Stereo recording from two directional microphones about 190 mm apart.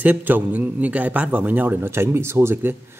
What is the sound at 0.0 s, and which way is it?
A man's voice, 10° right (ahead or behind).